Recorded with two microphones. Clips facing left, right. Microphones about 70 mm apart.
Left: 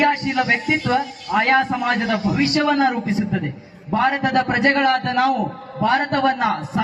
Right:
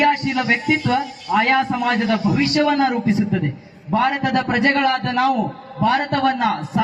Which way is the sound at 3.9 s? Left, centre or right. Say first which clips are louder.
Even; centre.